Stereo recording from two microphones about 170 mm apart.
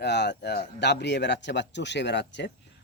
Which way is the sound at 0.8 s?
85° left.